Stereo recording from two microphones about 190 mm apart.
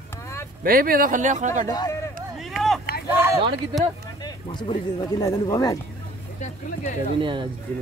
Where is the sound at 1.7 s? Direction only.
20° left (ahead or behind).